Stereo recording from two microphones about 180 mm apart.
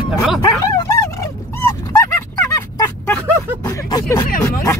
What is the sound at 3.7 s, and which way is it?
Vehicle, 20° left (ahead or behind).